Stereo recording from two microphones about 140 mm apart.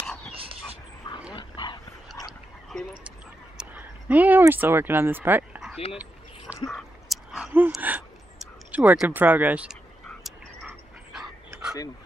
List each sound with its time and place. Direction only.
0.3 s dog: 40° right (ahead or behind)
1.3 s dog: 35° left (ahead or behind)
2.7 s duck: 5° right (ahead or behind)
3.5 s speech: 10° right (ahead or behind)
6.7 s a sound: centre (ahead or behind)
9.2 s speech: 10° right (ahead or behind)
10.0 s dog: 5° left (ahead or behind)